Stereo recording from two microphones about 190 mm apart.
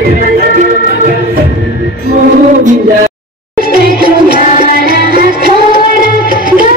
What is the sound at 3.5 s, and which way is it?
Music, 50° right (ahead or behind).